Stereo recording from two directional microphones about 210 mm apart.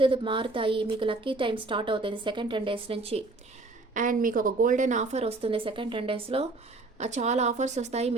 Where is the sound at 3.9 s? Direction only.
40° right (ahead or behind).